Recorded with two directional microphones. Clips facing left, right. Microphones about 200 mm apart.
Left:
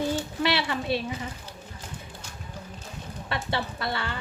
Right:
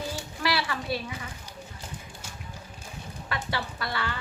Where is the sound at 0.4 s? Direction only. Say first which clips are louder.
Left 1 dB; 25° left (ahead or behind).